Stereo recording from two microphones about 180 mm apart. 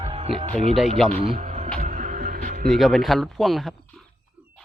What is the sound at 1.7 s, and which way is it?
Music, 40° right (ahead or behind).